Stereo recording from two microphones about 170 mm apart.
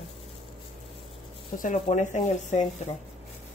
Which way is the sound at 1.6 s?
45° left (ahead or behind).